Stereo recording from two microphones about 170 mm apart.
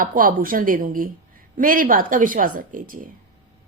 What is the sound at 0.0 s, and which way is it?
Speech, 55° right (ahead or behind).